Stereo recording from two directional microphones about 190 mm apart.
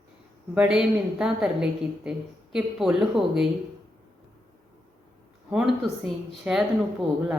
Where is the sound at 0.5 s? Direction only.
5° right (ahead or behind).